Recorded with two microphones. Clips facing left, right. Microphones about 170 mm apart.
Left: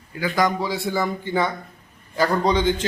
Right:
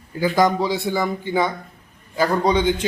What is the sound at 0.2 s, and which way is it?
A man's voice, 25° right (ahead or behind).